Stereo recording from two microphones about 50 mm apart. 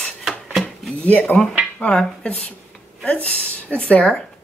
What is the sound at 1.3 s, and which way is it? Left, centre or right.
Speech, left.